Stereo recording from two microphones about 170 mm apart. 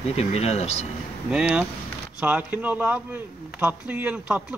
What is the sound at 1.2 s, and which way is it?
A man's voice, 5° right (ahead or behind).